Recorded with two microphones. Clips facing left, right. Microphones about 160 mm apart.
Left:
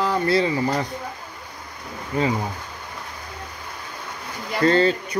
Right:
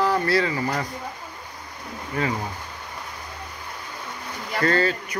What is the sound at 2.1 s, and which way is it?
Speech, 25° left (ahead or behind).